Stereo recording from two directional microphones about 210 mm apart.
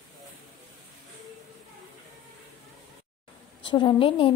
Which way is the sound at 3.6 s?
25° left (ahead or behind).